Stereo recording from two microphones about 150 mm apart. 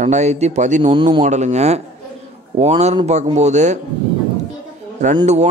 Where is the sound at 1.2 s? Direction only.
50° right (ahead or behind).